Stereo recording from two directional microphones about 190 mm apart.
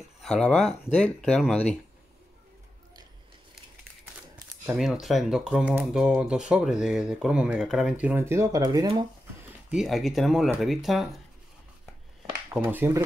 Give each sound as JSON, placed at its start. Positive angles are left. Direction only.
{"t": 0.2, "sound": "speech", "side_deg": 5}
{"t": 4.6, "sound": "speech", "side_deg": -5}
{"t": 9.7, "sound": "speech", "side_deg": 0}
{"t": 12.5, "sound": "speech", "side_deg": -5}